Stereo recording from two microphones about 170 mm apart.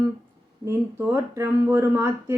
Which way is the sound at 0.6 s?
15° right (ahead or behind).